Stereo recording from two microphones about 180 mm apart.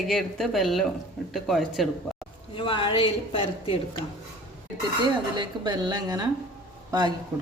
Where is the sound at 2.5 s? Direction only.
30° left (ahead or behind).